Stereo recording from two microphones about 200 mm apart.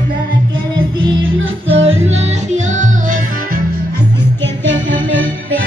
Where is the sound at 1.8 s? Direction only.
30° right (ahead or behind).